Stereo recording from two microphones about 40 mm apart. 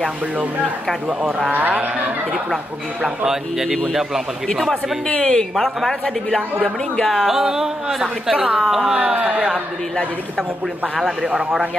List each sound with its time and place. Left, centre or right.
1.5 s speech: right
3.3 s speech: centre
5.0 s speech: centre
7.0 s speech: centre
8.9 s speech: right